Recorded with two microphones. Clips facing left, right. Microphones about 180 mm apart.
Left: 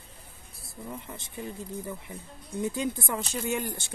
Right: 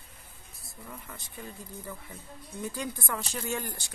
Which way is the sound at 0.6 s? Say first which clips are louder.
Left 6 dB; 25° left (ahead or behind).